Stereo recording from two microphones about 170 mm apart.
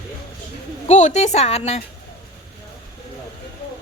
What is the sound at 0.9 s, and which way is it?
Speech, 45° left (ahead or behind).